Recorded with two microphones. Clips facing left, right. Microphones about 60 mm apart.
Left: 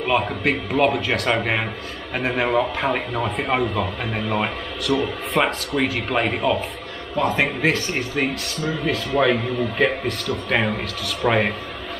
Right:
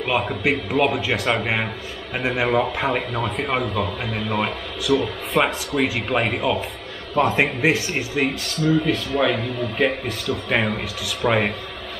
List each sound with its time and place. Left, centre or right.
0.0 s speech: centre
7.3 s a man's voice: centre
7.9 s speech: centre